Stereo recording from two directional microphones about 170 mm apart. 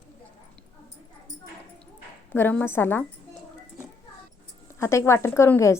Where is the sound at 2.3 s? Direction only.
10° left (ahead or behind).